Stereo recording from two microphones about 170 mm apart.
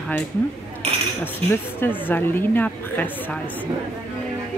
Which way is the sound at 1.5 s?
10° left (ahead or behind).